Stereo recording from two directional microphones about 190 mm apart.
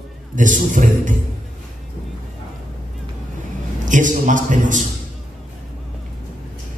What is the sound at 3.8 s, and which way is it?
A man's voice, 40° right (ahead or behind).